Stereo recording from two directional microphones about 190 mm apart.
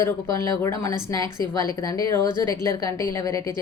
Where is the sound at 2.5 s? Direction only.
20° left (ahead or behind).